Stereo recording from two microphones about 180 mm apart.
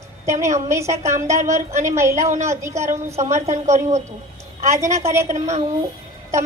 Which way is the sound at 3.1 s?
40° right (ahead or behind).